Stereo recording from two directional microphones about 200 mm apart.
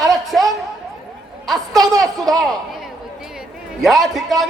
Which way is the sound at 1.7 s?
20° right (ahead or behind).